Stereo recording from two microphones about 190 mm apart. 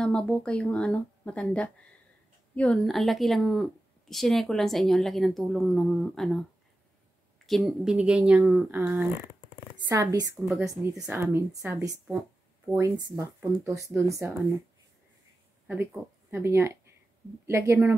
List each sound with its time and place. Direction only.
0.0 s a woman's voice: 5° left (ahead or behind)
7.4 s a woman's voice: centre (ahead or behind)
9.8 s speech: 15° right (ahead or behind)
15.6 s speech: 5° right (ahead or behind)